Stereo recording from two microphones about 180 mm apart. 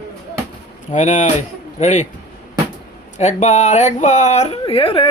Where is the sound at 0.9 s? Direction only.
40° left (ahead or behind).